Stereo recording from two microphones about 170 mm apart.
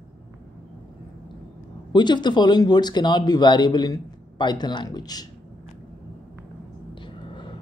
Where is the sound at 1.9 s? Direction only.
25° left (ahead or behind).